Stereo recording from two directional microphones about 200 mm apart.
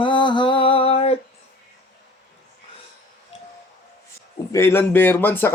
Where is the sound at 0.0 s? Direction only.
25° left (ahead or behind).